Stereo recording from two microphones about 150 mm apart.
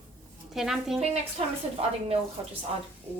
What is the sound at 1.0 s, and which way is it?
Speech, 45° right (ahead or behind).